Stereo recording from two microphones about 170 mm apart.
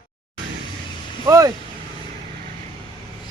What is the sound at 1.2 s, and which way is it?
Speech, 20° right (ahead or behind).